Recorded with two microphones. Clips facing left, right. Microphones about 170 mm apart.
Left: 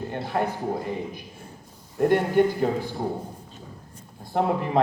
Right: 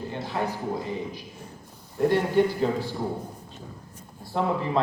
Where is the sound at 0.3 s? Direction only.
55° left (ahead or behind).